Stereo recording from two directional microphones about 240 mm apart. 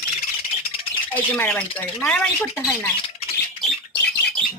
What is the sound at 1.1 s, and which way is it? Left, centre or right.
Speech, centre.